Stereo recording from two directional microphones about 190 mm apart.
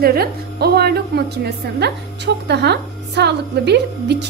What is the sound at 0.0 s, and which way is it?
A woman's voice, 55° right (ahead or behind).